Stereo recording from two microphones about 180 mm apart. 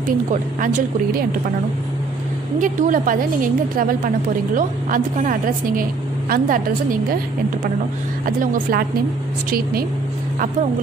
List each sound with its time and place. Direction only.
0.3 s a woman's voice: 45° right (ahead or behind)
2.6 s a woman's voice: 45° right (ahead or behind)
8.4 s a woman's voice: 50° right (ahead or behind)